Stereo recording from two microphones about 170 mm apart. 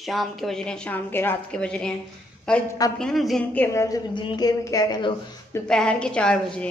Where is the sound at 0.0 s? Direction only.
Centre (ahead or behind).